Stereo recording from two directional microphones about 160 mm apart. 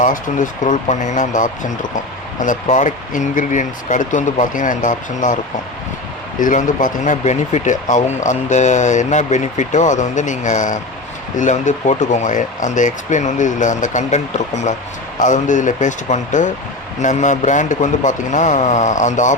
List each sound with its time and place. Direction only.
0.0 s speech: 55° left (ahead or behind)
6.4 s speech: 55° left (ahead or behind)